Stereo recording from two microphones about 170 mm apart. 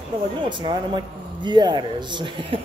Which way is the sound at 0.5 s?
25° right (ahead or behind).